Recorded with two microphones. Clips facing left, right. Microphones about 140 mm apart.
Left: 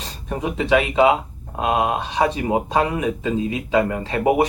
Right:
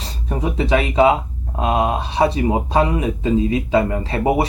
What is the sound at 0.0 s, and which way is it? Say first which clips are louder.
Speech: right 2 dB; 35° right (ahead or behind).